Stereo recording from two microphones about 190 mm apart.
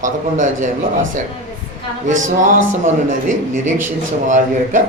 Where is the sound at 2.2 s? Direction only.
40° right (ahead or behind).